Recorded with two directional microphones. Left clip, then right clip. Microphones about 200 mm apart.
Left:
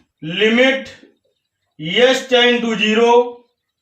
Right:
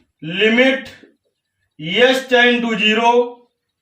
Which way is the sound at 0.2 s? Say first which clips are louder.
Even; 10° left (ahead or behind).